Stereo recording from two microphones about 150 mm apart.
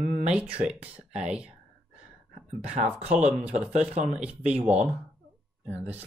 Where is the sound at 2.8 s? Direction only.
55° right (ahead or behind).